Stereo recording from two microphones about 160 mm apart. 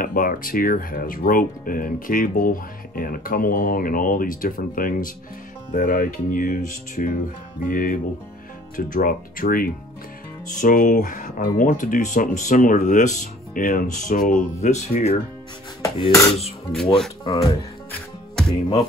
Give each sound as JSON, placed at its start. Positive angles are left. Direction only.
{"t": 0.0, "sound": "speech", "side_deg": 60}
{"t": 15.8, "sound": "a sound", "side_deg": 20}
{"t": 17.2, "sound": "speech", "side_deg": 35}